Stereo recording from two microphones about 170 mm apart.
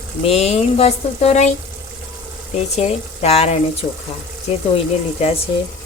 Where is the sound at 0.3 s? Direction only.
40° left (ahead or behind).